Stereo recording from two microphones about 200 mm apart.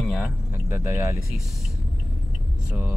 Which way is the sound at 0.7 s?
15° right (ahead or behind).